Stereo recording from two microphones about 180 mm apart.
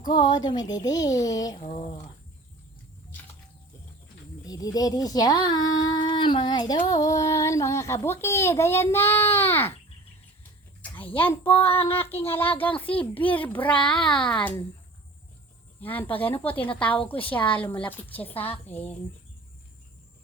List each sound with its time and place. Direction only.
0.1 s a woman's voice: 25° left (ahead or behind)
4.4 s a woman's voice: 20° left (ahead or behind)
5.8 s female singing: 25° left (ahead or behind)
11.0 s female singing: 10° left (ahead or behind)
13.8 s a child's voice: 5° left (ahead or behind)
15.8 s female singing: 10° left (ahead or behind)